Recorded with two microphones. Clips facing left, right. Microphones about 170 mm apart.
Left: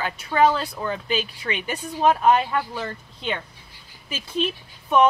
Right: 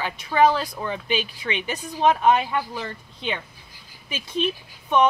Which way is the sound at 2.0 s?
Centre (ahead or behind).